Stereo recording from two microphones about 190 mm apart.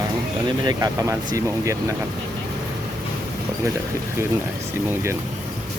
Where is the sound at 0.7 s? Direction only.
15° right (ahead or behind).